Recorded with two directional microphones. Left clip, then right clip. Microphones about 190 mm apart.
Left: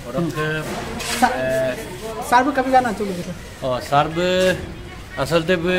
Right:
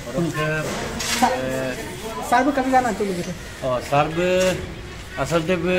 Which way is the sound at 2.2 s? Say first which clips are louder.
Left 2 dB; centre (ahead or behind).